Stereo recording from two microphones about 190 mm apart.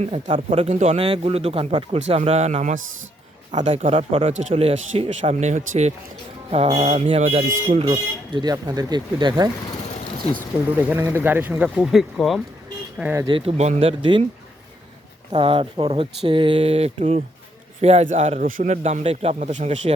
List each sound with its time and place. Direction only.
0.0 s speech: 30° right (ahead or behind)
7.9 s speech: 20° right (ahead or behind)
10.8 s speech: 10° right (ahead or behind)
13.2 s speech: 30° right (ahead or behind)
15.3 s speech: 30° right (ahead or behind)